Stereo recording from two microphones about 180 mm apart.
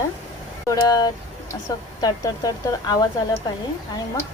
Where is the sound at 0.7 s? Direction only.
20° left (ahead or behind).